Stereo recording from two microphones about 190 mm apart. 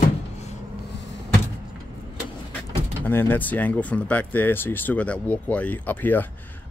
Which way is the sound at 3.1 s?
10° left (ahead or behind).